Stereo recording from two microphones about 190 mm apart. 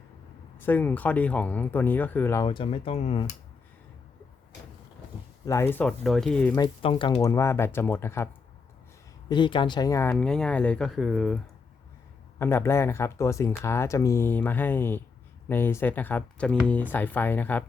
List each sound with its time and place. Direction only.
0.6 s speech: 10° left (ahead or behind)
2.5 s speech: 25° left (ahead or behind)
5.5 s speech: 15° left (ahead or behind)
6.6 s speech: 25° left (ahead or behind)
9.3 s speech: 25° left (ahead or behind); by 11.3 s centre (ahead or behind)
12.4 s speech: 10° left (ahead or behind)